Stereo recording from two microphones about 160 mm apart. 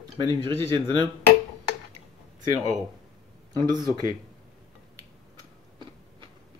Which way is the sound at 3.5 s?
25° right (ahead or behind).